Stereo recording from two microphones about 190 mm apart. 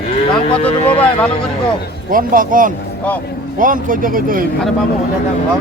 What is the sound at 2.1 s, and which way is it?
Speech, 45° right (ahead or behind).